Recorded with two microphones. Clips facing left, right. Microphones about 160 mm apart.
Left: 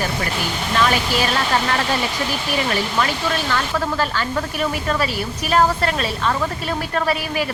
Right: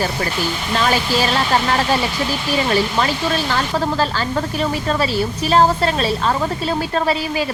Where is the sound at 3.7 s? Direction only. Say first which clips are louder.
Right 2 dB; 30° right (ahead or behind).